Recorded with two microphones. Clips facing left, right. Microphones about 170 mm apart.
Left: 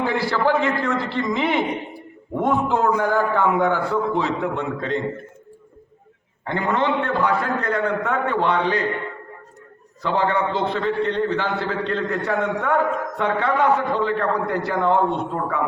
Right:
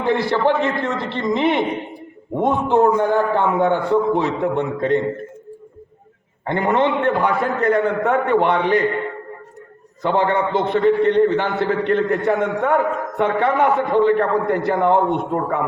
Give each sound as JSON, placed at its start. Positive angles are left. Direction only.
{"t": 0.0, "sound": "a man's voice", "side_deg": -20}
{"t": 6.4, "sound": "a man's voice", "side_deg": -20}
{"t": 10.0, "sound": "a man's voice", "side_deg": -20}